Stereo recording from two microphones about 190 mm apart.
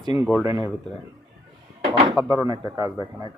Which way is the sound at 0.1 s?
10° right (ahead or behind).